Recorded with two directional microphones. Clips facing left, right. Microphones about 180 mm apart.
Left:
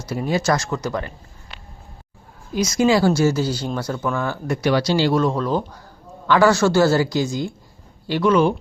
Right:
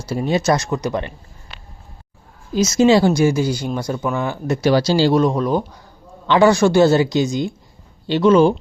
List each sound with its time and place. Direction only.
0.0 s speech: 25° right (ahead or behind)
2.6 s speech: 25° right (ahead or behind)
5.1 s speech: 15° right (ahead or behind)